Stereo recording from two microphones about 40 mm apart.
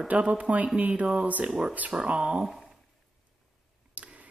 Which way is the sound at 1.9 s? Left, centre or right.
Right.